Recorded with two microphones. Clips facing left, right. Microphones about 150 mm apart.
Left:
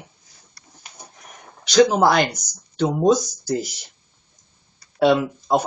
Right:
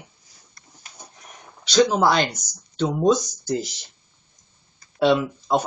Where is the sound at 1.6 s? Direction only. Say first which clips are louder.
Left 3 dB; 15° left (ahead or behind).